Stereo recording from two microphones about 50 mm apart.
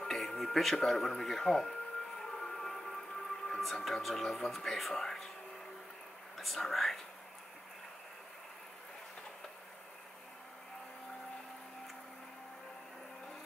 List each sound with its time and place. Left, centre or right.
0.0 s music: centre
0.7 s speech: centre
2.2 s music: centre
3.4 s speech: centre
6.3 s speech: centre